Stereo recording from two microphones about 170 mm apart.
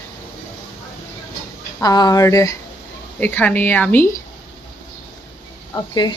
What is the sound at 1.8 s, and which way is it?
A woman's voice, 25° left (ahead or behind).